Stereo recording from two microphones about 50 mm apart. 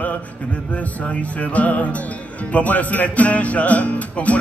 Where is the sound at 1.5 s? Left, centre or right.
Left.